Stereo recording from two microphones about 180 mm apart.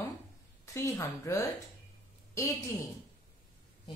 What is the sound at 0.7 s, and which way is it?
Speech, 15° left (ahead or behind).